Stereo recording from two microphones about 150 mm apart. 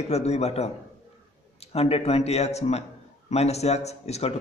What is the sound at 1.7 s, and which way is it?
A man's voice, 40° left (ahead or behind).